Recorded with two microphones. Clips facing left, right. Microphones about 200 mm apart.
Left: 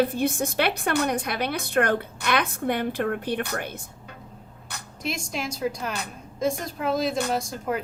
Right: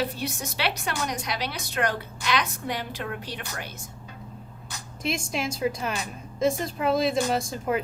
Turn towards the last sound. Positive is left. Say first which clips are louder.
# right 1 dB
turn(degrees=0)  # may be behind; listen again after turning